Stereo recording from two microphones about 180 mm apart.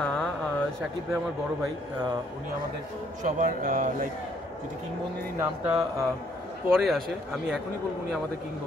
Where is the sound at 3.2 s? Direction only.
45° right (ahead or behind).